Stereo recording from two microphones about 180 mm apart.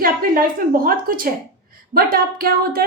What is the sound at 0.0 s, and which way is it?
A woman's voice, 55° right (ahead or behind).